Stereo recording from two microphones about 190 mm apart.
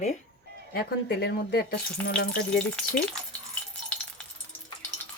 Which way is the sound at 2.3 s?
5° left (ahead or behind).